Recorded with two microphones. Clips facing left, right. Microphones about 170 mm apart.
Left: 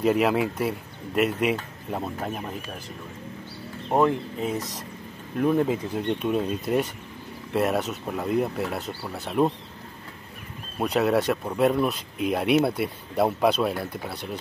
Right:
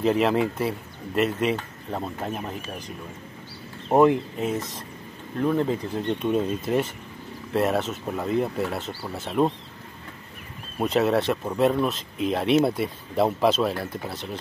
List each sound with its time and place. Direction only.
0.0 s speech: 5° left (ahead or behind)
3.9 s speech: 10° right (ahead or behind)
5.4 s speech: 10° left (ahead or behind)
10.8 s speech: centre (ahead or behind)